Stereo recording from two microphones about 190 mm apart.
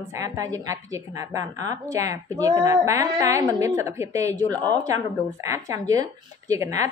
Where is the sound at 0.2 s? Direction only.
20° right (ahead or behind).